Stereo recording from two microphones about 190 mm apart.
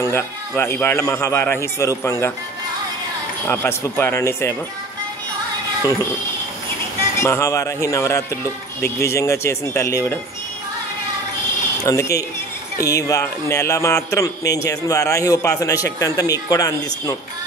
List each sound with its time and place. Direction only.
0.0 s speech: 15° left (ahead or behind)
3.4 s speech: 10° left (ahead or behind)
7.2 s speech: 15° left (ahead or behind)
11.8 s speech: 15° left (ahead or behind)